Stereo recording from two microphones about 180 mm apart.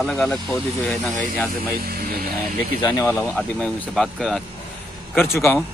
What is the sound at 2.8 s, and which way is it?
Speech, 20° left (ahead or behind).